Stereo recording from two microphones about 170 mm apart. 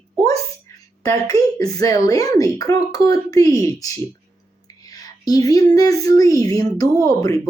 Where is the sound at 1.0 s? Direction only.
20° left (ahead or behind).